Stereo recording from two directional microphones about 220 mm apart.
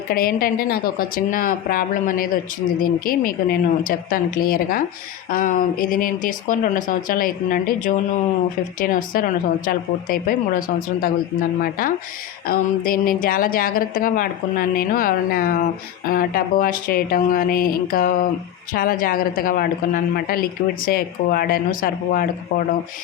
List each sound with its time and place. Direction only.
0.1 s a woman's voice: 40° left (ahead or behind)